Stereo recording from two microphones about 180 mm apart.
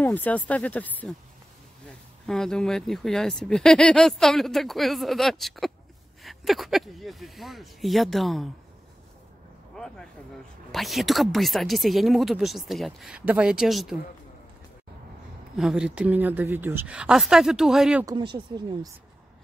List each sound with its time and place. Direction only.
0.0 s speech: 10° left (ahead or behind)
2.2 s speech: 5° left (ahead or behind)
9.8 s a sound: 5° left (ahead or behind)
10.7 s speech: centre (ahead or behind)
15.5 s speech: 5° right (ahead or behind)
18.0 s speech: 25° right (ahead or behind)